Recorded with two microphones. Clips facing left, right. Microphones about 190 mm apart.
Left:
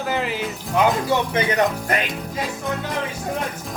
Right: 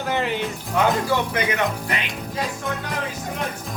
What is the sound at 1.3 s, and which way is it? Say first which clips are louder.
Speech: left 3 dB; 30° left (ahead or behind).